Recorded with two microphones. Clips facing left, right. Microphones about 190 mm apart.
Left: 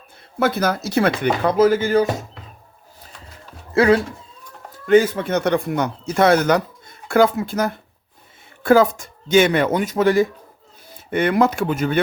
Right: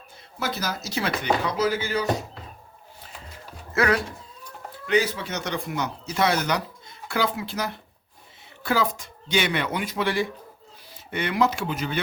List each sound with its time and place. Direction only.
0.3 s speech: 60° left (ahead or behind)
3.7 s speech: 30° left (ahead or behind)
4.9 s speech: 50° left (ahead or behind)